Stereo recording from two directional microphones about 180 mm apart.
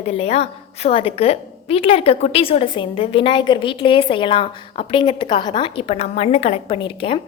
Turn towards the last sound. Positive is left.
turn(degrees=30)  # may be behind; listen again after turning